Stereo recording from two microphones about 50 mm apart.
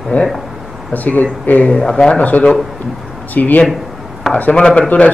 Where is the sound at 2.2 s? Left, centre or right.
Left.